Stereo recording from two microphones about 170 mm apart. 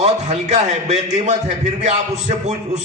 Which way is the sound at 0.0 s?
40° right (ahead or behind).